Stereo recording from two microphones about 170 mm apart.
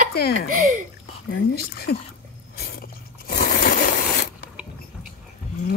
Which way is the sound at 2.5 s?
65° left (ahead or behind).